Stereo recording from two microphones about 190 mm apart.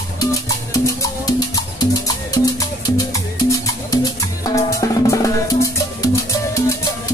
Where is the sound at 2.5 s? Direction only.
15° left (ahead or behind).